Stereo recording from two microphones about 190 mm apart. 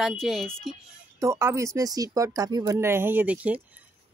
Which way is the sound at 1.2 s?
15° right (ahead or behind).